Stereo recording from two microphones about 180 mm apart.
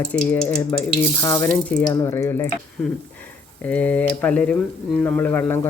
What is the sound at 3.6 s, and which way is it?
Speech, 10° left (ahead or behind).